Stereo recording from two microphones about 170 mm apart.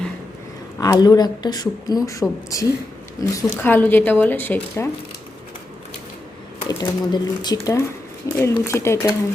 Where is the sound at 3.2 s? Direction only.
15° left (ahead or behind).